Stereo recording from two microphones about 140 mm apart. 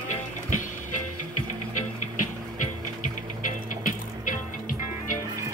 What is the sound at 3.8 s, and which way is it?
Music, 70° left (ahead or behind).